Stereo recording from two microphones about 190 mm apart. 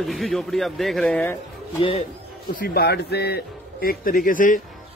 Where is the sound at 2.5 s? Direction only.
55° left (ahead or behind).